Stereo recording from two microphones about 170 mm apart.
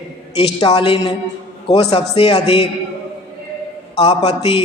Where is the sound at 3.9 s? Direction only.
35° left (ahead or behind).